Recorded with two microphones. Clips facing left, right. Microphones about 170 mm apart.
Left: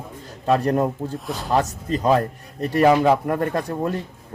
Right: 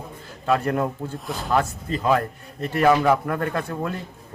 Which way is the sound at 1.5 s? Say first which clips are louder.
Left 2 dB; 40° left (ahead or behind).